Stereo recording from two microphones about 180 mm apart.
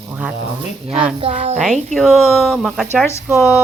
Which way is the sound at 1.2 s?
35° right (ahead or behind).